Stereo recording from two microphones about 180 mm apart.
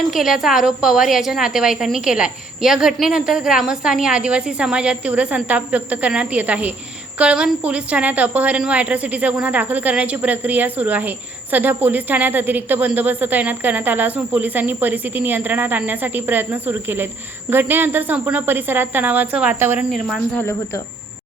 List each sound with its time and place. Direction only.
0.1 s a woman's voice: centre (ahead or behind)
19.9 s a woman's voice: centre (ahead or behind)